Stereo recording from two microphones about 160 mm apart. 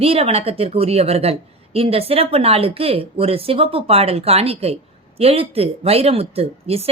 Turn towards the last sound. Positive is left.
turn(degrees=-40)  # may be behind; listen again after turning